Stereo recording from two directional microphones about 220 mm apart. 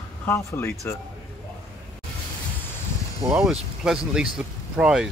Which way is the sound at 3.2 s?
Centre (ahead or behind).